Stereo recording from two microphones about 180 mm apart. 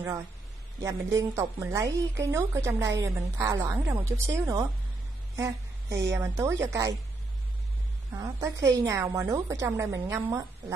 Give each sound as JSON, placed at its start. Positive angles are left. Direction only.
{"t": 0.8, "sound": "a woman's voice", "side_deg": -15}
{"t": 5.3, "sound": "a sound", "side_deg": -15}
{"t": 6.1, "sound": "a woman's voice", "side_deg": -15}
{"t": 8.2, "sound": "a woman's voice", "side_deg": -20}